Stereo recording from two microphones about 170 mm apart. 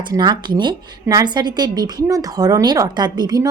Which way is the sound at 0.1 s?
25° right (ahead or behind).